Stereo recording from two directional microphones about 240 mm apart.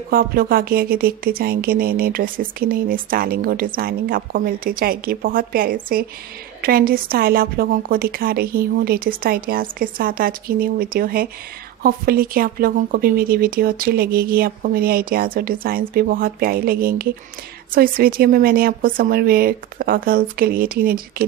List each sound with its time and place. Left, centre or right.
0.1 s a woman's voice: right